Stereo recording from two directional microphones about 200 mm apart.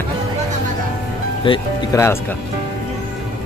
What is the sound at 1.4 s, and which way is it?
Speech, 20° left (ahead or behind).